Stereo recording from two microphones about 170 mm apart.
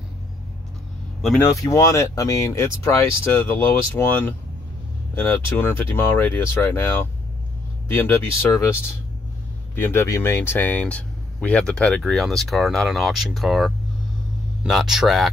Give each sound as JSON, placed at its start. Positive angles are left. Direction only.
{"t": 1.4, "sound": "speech", "side_deg": 20}
{"t": 9.8, "sound": "speech", "side_deg": 15}